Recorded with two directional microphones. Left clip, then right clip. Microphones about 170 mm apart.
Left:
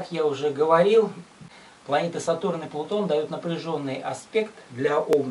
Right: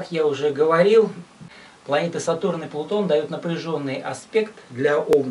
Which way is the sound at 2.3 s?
15° right (ahead or behind).